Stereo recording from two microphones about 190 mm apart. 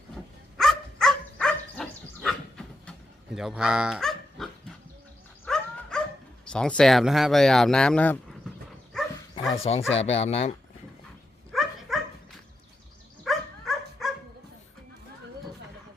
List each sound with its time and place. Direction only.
0.5 s dog: centre (ahead or behind)
3.3 s speech: 5° right (ahead or behind)
5.5 s dog: 5° left (ahead or behind)
6.5 s speech: 5° left (ahead or behind)
9.7 s speech: 30° left (ahead or behind)
11.5 s dog: centre (ahead or behind)
13.2 s dog: centre (ahead or behind)